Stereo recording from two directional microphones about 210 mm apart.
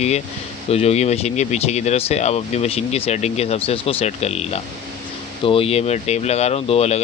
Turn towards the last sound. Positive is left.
turn(degrees=30)  # may be behind; listen again after turning